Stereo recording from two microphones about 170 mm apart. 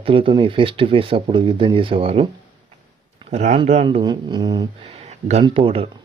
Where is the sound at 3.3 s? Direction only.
40° right (ahead or behind).